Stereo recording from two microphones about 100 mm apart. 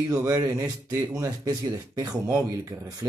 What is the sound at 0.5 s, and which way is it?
Speech, 30° right (ahead or behind).